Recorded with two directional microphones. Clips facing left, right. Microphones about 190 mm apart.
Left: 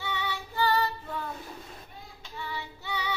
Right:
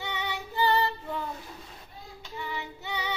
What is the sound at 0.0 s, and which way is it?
Child singing, 20° right (ahead or behind).